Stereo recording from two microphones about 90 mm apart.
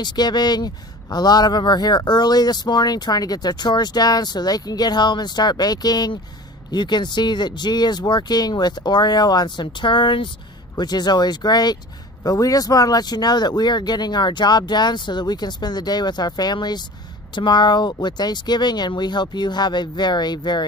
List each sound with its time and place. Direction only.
0.0 s speech: 55° left (ahead or behind)
10.8 s speech: 50° left (ahead or behind)